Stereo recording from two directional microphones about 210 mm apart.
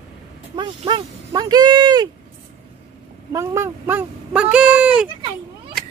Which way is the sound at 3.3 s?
15° right (ahead or behind).